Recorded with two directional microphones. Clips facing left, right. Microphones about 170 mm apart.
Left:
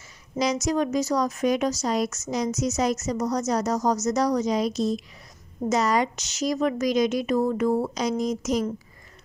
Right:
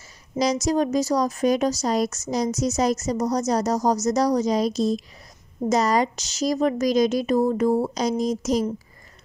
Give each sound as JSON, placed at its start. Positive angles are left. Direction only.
{"t": 0.4, "sound": "speech", "side_deg": -35}